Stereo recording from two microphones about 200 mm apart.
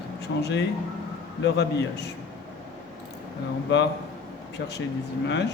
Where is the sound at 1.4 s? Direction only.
55° left (ahead or behind).